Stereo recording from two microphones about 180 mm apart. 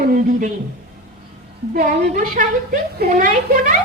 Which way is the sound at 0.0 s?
50° right (ahead or behind).